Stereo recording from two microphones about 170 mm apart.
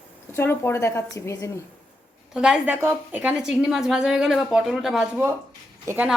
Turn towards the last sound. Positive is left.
turn(degrees=-10)  # may be behind; listen again after turning